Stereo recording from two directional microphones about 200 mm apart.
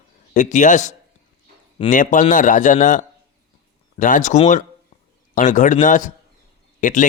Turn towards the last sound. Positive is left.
turn(degrees=40)  # may be behind; listen again after turning